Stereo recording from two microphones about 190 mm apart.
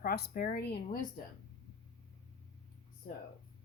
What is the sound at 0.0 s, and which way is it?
Speech, 50° left (ahead or behind).